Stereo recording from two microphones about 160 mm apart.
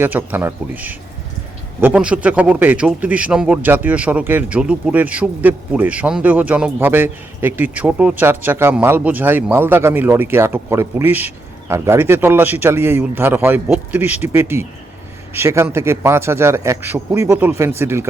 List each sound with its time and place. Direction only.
0.0 s a man's voice: 10° right (ahead or behind)